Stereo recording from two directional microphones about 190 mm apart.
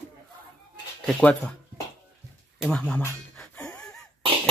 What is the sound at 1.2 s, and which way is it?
Speech, 5° left (ahead or behind).